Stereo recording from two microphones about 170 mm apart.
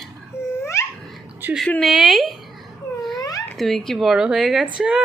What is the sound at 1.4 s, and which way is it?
Speech, centre (ahead or behind).